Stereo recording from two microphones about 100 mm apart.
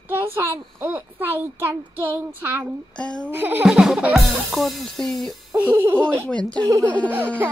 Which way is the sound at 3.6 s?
5° right (ahead or behind).